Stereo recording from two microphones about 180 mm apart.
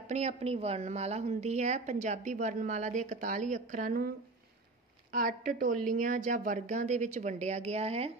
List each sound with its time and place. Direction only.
0.0 s a woman's voice: 35° right (ahead or behind)
5.1 s a woman's voice: 50° right (ahead or behind); by 8.1 s 35° right (ahead or behind)